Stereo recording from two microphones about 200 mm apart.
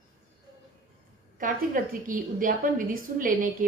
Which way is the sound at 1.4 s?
45° right (ahead or behind).